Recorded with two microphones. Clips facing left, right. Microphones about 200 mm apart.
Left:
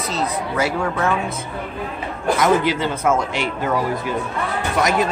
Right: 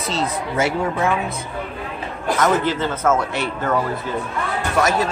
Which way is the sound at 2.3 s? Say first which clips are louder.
Left 1 dB; 10° left (ahead or behind).